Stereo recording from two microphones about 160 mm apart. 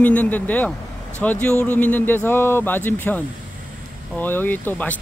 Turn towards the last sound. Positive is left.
turn(degrees=10)  # may be behind; listen again after turning